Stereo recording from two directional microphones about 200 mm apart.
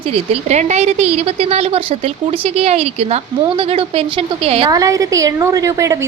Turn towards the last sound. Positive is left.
turn(degrees=-15)  # may be behind; listen again after turning